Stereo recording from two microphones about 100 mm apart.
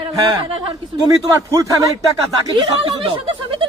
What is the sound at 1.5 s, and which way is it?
Speech, 35° right (ahead or behind).